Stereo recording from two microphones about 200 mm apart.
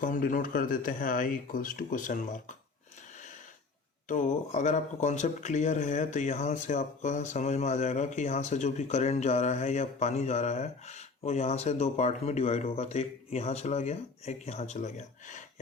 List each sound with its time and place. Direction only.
0.0 s speech: 40° left (ahead or behind)
4.1 s speech: 35° left (ahead or behind)